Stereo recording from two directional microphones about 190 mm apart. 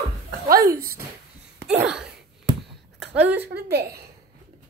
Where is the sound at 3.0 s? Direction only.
10° right (ahead or behind).